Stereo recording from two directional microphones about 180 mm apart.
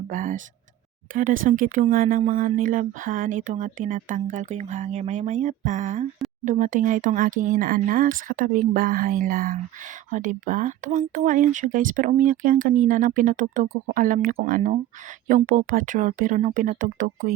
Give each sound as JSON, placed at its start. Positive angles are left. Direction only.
{"t": 0.1, "sound": "speech", "side_deg": -50}